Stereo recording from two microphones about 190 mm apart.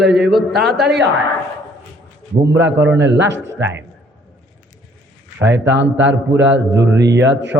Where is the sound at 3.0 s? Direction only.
70° right (ahead or behind).